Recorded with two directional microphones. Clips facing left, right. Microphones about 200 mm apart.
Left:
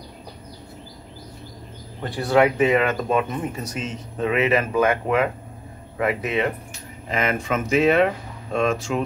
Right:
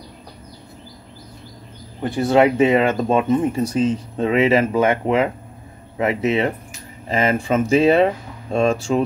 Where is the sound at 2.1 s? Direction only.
25° right (ahead or behind).